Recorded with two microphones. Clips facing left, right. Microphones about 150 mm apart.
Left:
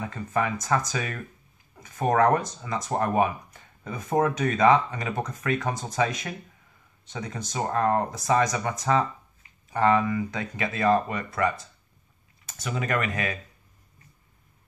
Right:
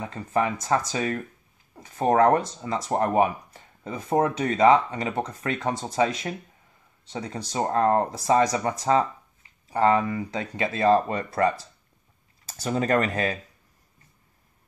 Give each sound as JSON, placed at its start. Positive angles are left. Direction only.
{"t": 0.0, "sound": "speech", "side_deg": -30}